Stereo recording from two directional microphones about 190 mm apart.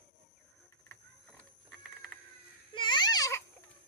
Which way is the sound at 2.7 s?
25° left (ahead or behind).